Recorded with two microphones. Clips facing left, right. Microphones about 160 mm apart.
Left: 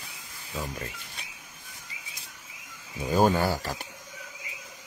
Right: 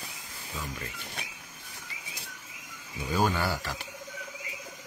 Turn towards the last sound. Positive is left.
turn(degrees=45)  # may be behind; listen again after turning